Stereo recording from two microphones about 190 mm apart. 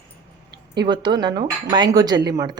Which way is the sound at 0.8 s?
25° right (ahead or behind).